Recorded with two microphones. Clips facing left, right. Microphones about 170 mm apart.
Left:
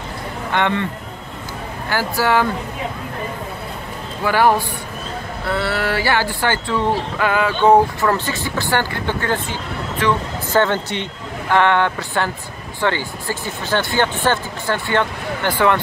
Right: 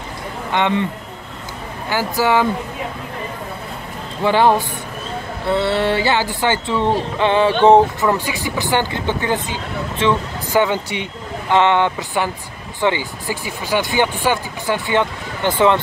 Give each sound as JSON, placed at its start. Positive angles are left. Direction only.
{"t": 0.5, "sound": "speech", "side_deg": -15}
{"t": 1.9, "sound": "speech", "side_deg": -15}
{"t": 4.2, "sound": "speech", "side_deg": -20}